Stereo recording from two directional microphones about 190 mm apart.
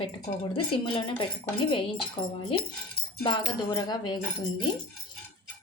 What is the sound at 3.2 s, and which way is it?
Speech, 20° left (ahead or behind).